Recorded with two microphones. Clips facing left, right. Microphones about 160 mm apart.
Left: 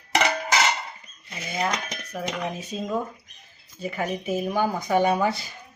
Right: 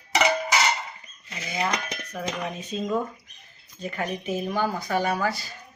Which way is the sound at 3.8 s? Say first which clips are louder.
Left 2 dB; 5° left (ahead or behind).